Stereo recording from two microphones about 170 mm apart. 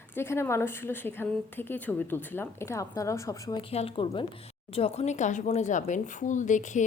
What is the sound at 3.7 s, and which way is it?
A woman's voice, 35° left (ahead or behind).